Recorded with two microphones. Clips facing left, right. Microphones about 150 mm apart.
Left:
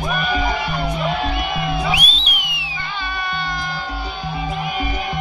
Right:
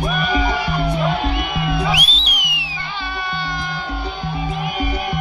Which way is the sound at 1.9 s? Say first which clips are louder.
Right 1 dB; 85° right.